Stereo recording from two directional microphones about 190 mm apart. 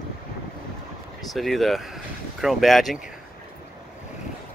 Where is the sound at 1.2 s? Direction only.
Centre (ahead or behind).